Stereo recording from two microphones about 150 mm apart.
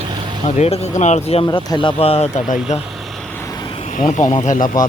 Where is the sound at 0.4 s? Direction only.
45° left (ahead or behind).